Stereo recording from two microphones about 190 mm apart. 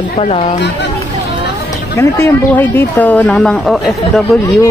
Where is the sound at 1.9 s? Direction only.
15° left (ahead or behind).